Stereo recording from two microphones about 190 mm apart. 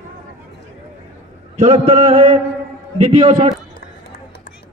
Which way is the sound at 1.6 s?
35° right (ahead or behind).